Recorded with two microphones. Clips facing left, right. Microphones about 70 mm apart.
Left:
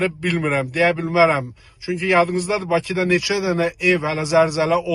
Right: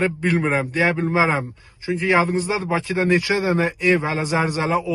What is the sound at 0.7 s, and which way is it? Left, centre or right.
A man's voice, right.